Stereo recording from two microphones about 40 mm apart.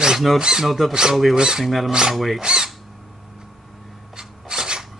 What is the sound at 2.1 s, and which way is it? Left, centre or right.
Speech, centre.